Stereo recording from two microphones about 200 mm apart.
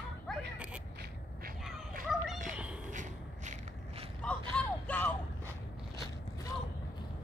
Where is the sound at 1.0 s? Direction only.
50° right (ahead or behind).